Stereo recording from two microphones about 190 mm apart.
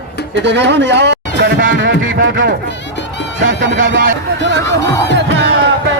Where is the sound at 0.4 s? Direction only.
65° right (ahead or behind).